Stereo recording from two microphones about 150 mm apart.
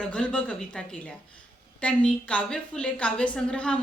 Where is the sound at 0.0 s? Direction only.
5° left (ahead or behind).